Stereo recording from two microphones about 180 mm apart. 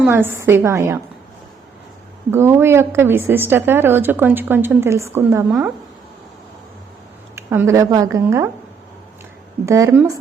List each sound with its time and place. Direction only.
0.1 s a woman's voice: 15° right (ahead or behind)
2.3 s a woman's voice: 15° right (ahead or behind)
7.3 s a woman's voice: 15° right (ahead or behind)
9.6 s a woman's voice: 15° right (ahead or behind)